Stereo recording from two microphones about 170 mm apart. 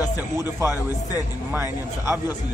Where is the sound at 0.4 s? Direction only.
15° right (ahead or behind).